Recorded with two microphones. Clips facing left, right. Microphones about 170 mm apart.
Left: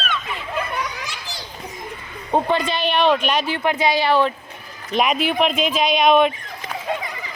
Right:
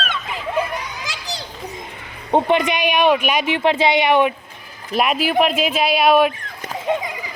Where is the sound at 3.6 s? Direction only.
25° right (ahead or behind).